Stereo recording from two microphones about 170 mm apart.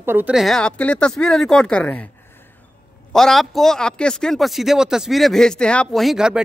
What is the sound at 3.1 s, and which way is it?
Speech, centre (ahead or behind).